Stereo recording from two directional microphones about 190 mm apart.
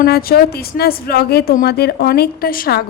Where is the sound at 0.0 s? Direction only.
50° left (ahead or behind).